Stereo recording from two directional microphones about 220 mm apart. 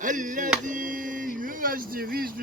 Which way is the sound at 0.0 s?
35° right (ahead or behind).